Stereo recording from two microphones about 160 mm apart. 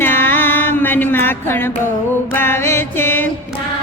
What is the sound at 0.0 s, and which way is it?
Music, 15° left (ahead or behind).